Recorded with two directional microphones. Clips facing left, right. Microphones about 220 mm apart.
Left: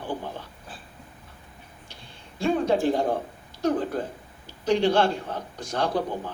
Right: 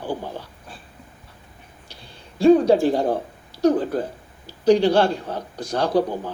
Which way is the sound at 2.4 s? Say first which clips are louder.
Right 9 dB; 35° right (ahead or behind).